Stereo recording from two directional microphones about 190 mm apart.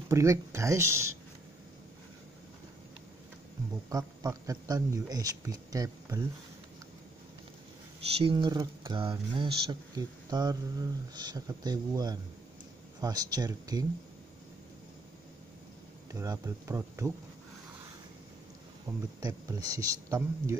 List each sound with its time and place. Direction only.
0.1 s a man's voice: 15° right (ahead or behind)
3.9 s speech: 20° right (ahead or behind)
8.2 s speech: 25° right (ahead or behind)
16.1 s a man's voice: 15° right (ahead or behind)
18.9 s speech: 5° right (ahead or behind)
19.2 s a man's voice: 20° right (ahead or behind)